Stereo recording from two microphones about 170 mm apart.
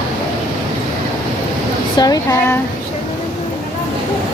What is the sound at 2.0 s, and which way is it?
Speech, 20° left (ahead or behind).